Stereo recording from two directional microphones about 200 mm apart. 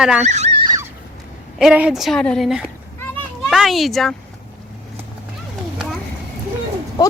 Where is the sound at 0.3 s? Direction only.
35° right (ahead or behind).